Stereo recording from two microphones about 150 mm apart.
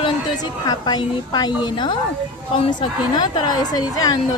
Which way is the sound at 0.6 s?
30° left (ahead or behind).